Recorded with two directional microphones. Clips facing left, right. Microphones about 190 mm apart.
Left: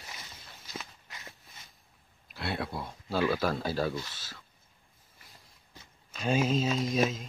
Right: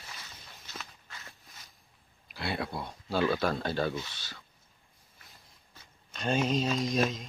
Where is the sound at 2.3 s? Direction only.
Centre (ahead or behind).